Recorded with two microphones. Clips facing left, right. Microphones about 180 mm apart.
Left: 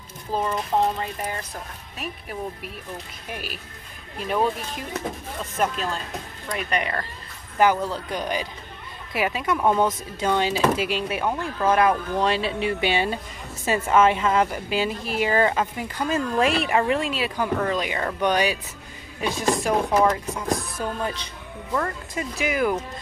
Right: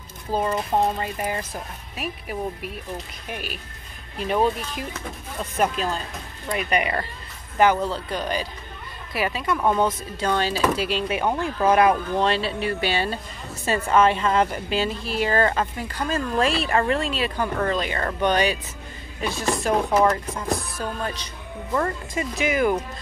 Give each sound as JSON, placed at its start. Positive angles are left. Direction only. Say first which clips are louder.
{"t": 0.3, "sound": "speech", "louder": "right 1 dB", "side_deg": -5}
{"t": 7.5, "sound": "speech", "louder": "right 1 dB", "side_deg": 5}
{"t": 9.6, "sound": "speech", "louder": "left 1 dB", "side_deg": 5}
{"t": 11.6, "sound": "speech", "louder": "right 2 dB", "side_deg": -10}
{"t": 12.2, "sound": "speech", "louder": "even", "side_deg": 15}
{"t": 21.7, "sound": "speech", "louder": "right 2 dB", "side_deg": 0}